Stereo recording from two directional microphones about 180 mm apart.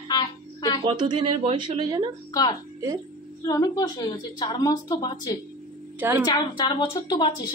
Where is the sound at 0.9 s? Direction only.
25° right (ahead or behind).